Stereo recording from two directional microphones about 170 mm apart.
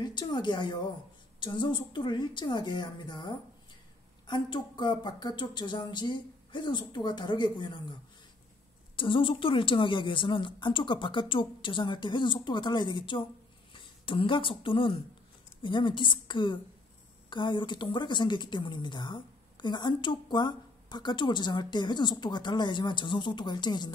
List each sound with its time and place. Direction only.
0.0 s speech: 25° left (ahead or behind)
8.9 s speech: 30° left (ahead or behind)